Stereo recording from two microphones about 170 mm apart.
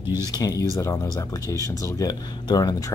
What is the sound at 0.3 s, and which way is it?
Speech, 20° left (ahead or behind).